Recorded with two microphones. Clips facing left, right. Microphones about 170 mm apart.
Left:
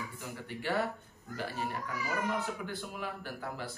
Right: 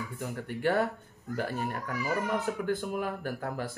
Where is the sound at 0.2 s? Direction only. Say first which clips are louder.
Right 12 dB; 50° right (ahead or behind).